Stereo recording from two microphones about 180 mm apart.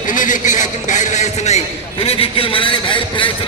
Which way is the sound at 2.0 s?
30° left (ahead or behind).